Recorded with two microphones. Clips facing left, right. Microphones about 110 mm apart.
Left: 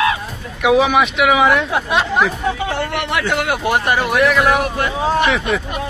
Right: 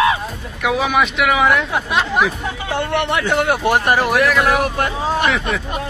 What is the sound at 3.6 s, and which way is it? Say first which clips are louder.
Speech: right 1 dB; centre (ahead or behind).